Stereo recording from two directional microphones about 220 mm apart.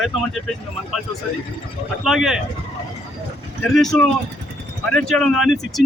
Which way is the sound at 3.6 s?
Centre (ahead or behind).